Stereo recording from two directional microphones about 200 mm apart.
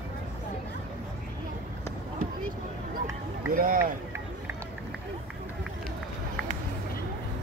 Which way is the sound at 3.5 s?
45° right (ahead or behind).